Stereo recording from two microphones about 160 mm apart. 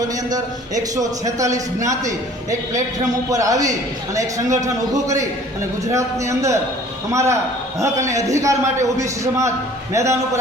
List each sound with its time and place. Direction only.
0.3 s a man's voice: 25° right (ahead or behind)